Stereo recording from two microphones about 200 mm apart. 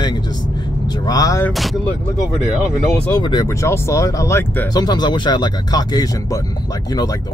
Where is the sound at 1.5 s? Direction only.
Centre (ahead or behind).